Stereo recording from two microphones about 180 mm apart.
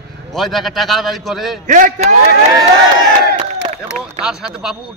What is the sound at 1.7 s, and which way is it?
Speech, 45° right (ahead or behind).